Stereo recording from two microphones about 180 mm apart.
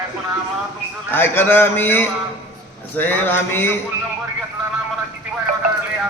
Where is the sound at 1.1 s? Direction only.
10° left (ahead or behind).